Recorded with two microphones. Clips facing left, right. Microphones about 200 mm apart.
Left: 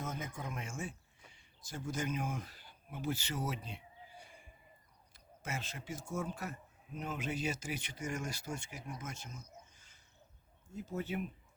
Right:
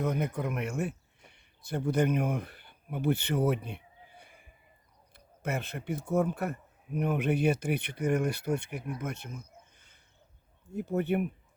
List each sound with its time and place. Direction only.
0.0 s speech: 65° right (ahead or behind)
10.7 s speech: 60° right (ahead or behind)